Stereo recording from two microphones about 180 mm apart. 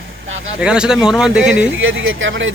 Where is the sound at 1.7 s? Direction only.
90° right.